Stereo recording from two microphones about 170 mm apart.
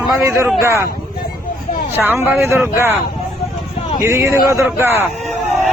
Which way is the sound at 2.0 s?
15° right (ahead or behind).